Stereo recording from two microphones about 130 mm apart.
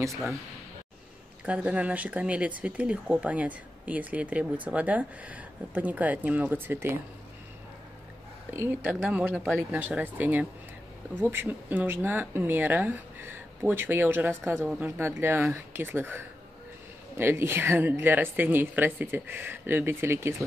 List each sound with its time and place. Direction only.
0.0 s speech: 25° right (ahead or behind)
1.4 s speech: 10° right (ahead or behind)
8.5 s speech: 15° right (ahead or behind)